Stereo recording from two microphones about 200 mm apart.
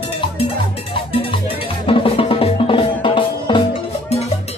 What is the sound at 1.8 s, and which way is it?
Music, 30° left (ahead or behind).